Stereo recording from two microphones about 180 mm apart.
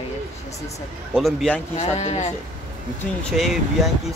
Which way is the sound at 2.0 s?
35° left (ahead or behind).